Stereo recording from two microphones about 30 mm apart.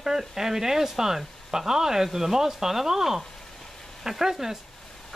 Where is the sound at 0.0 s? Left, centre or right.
Centre.